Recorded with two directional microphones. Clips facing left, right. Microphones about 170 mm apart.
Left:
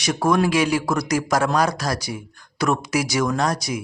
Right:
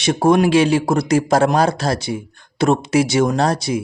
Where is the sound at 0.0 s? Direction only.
25° right (ahead or behind).